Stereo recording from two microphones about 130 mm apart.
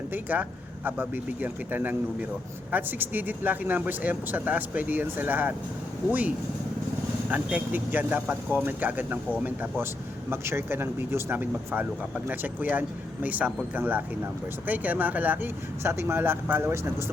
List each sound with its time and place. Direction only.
0.1 s speech: 15° right (ahead or behind)